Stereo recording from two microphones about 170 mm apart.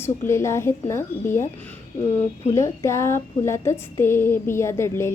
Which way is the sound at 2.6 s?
15° left (ahead or behind).